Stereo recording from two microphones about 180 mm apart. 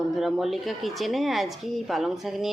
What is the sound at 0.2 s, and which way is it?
Speech, centre (ahead or behind).